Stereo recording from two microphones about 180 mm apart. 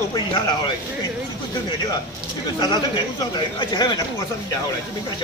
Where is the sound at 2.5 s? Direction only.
25° left (ahead or behind).